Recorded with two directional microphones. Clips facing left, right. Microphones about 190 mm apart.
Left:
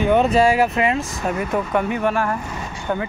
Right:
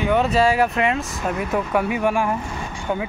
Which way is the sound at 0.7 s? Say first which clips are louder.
Left 1 dB; centre (ahead or behind).